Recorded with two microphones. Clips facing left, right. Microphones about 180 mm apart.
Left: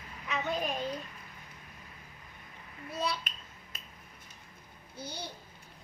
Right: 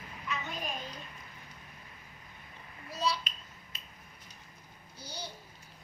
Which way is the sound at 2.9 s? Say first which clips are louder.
Right 1 dB; 55° left (ahead or behind).